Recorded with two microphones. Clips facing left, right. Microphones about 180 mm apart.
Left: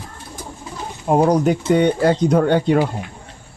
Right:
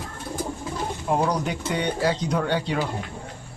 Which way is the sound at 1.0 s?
45° left (ahead or behind).